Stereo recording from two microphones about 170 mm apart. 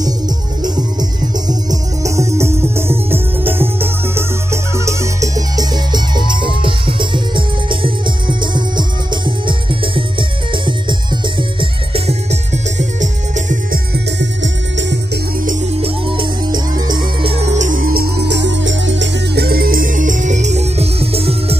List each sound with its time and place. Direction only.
1.5 s music: 20° right (ahead or behind); by 13.7 s 45° right (ahead or behind)
14.4 s music: 90° right
15.8 s music: 30° right (ahead or behind)